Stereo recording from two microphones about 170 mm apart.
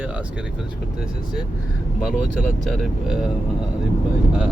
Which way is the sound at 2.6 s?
Centre (ahead or behind).